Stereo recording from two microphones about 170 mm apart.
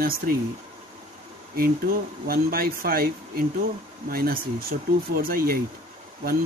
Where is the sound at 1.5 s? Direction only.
60° right (ahead or behind).